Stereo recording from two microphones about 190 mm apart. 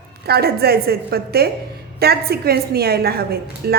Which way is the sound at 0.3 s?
55° right (ahead or behind).